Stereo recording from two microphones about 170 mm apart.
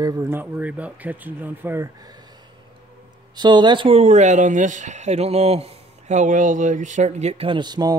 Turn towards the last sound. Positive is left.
turn(degrees=-25)  # may be behind; listen again after turning